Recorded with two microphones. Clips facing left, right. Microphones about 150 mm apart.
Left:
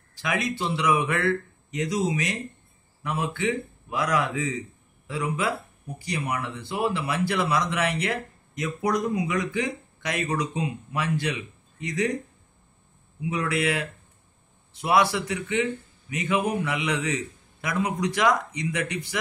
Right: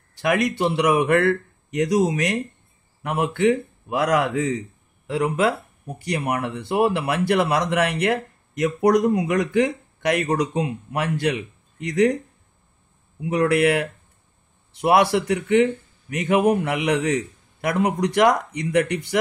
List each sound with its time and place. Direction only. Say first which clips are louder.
0.1 s speech: right 7 dB; 60° right (ahead or behind)
13.2 s speech: right 8 dB; 60° right (ahead or behind)